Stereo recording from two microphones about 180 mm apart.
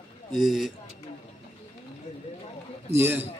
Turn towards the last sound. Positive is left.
turn(degrees=-10)  # may be behind; listen again after turning